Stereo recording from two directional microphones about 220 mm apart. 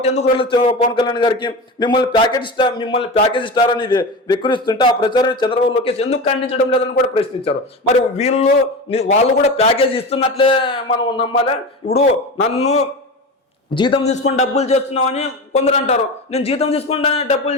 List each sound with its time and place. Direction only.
0.0 s a man's voice: 30° left (ahead or behind)